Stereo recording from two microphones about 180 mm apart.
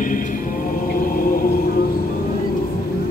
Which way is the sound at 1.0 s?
55° left (ahead or behind).